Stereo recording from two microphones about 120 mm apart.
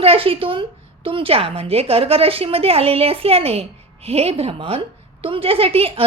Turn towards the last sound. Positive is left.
turn(degrees=-55)  # may be behind; listen again after turning